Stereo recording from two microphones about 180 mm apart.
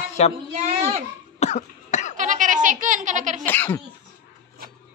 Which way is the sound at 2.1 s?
45° right (ahead or behind).